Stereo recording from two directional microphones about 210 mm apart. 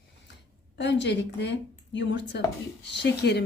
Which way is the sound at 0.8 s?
55° left (ahead or behind).